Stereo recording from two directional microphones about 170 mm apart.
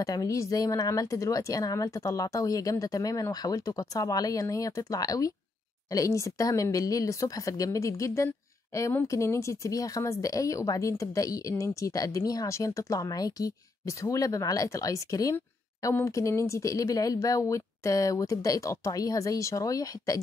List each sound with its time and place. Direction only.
0.0 s a woman's voice: 20° left (ahead or behind)